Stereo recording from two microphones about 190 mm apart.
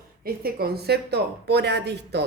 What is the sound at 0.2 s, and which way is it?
A woman's voice, 50° right (ahead or behind).